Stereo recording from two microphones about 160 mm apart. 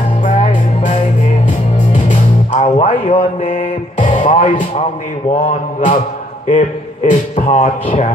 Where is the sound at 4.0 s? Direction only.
50° left (ahead or behind).